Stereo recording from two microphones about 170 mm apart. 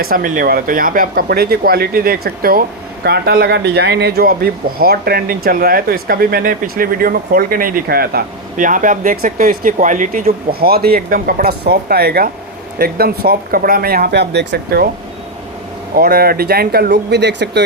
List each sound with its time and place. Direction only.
0.0 s speech: 55° right (ahead or behind); by 14.8 s 80° right
16.0 s speech: 60° right (ahead or behind); by 17.6 s 80° right